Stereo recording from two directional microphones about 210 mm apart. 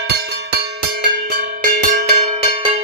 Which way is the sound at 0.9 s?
45° right (ahead or behind).